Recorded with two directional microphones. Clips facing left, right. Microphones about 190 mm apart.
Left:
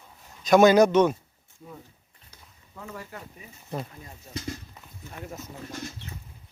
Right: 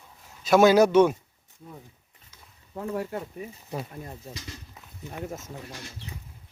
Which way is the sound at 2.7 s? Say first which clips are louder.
Right 10 dB; 60° right (ahead or behind).